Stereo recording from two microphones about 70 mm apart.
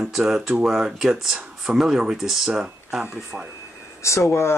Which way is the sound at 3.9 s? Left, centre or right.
Left.